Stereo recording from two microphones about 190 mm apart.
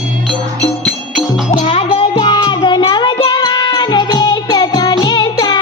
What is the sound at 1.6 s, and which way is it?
Music, 30° left (ahead or behind).